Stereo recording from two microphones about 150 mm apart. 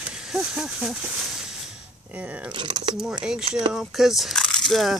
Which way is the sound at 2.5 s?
30° right (ahead or behind).